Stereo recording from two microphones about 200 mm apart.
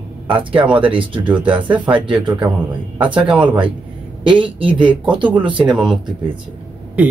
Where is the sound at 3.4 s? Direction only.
25° right (ahead or behind).